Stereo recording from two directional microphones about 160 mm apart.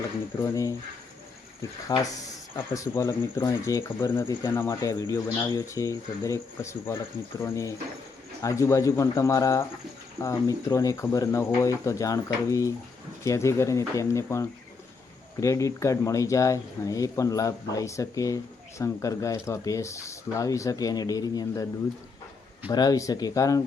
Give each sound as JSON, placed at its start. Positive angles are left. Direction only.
{"t": 0.4, "sound": "speech", "side_deg": 20}
{"t": 1.9, "sound": "speech", "side_deg": 25}
{"t": 22.7, "sound": "speech", "side_deg": 25}